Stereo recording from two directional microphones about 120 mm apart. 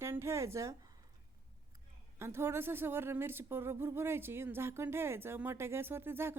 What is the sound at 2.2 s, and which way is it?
A woman's voice, 20° right (ahead or behind).